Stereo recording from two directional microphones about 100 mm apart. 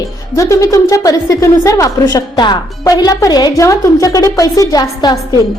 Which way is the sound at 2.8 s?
40° left (ahead or behind).